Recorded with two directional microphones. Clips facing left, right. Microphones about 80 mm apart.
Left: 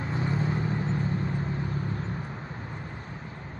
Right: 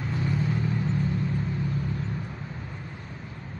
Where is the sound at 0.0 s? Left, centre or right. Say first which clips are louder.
Even; left.